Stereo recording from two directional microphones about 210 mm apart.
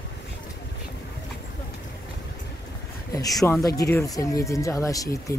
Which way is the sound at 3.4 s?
15° left (ahead or behind).